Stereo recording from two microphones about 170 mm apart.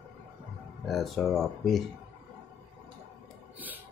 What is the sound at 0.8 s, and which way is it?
Speech, centre (ahead or behind).